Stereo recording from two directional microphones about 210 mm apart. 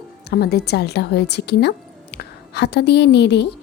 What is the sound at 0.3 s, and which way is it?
A woman's voice, 50° left (ahead or behind).